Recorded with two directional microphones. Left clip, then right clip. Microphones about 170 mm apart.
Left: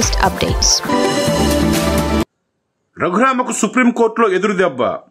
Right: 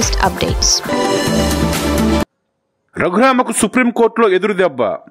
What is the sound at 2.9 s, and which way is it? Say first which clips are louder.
A man's voice: right 2 dB; 35° right (ahead or behind).